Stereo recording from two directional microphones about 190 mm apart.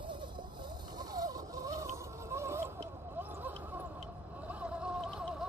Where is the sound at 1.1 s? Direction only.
20° right (ahead or behind).